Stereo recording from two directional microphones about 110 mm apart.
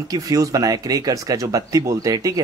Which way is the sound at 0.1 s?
30° right (ahead or behind).